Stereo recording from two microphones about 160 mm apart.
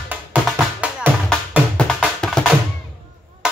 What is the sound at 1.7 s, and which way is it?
Music, 5° left (ahead or behind).